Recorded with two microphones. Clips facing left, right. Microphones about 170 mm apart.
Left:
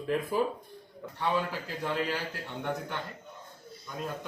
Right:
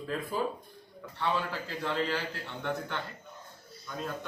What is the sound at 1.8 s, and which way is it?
Speech, 15° left (ahead or behind).